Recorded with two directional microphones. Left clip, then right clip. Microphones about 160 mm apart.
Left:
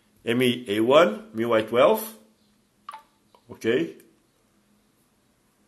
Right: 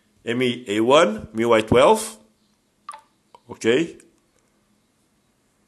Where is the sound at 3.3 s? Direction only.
30° right (ahead or behind).